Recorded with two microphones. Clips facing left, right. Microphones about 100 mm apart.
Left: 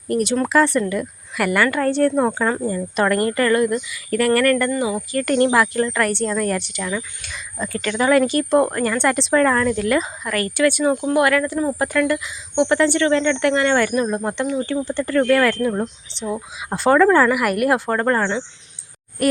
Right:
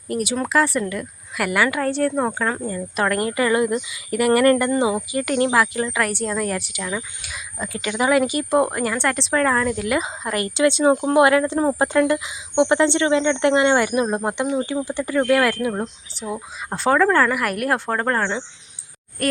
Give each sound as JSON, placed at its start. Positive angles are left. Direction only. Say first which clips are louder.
{"t": 0.1, "sound": "a woman's voice", "louder": "left 3 dB", "side_deg": -5}
{"t": 5.2, "sound": "speech", "louder": "left 3 dB", "side_deg": -5}
{"t": 10.0, "sound": "speech", "louder": "left 1 dB", "side_deg": -20}
{"t": 14.7, "sound": "a woman's voice", "louder": "left 2 dB", "side_deg": -10}